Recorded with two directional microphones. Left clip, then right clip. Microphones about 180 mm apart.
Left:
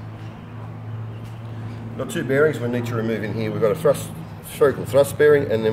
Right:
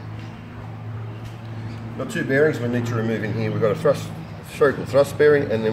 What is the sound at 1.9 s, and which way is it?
Speech, 5° left (ahead or behind).